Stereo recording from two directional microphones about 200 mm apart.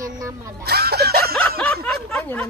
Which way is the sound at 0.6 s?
50° right (ahead or behind).